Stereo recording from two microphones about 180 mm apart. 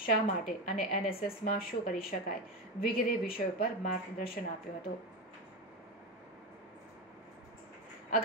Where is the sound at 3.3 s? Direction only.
55° left (ahead or behind).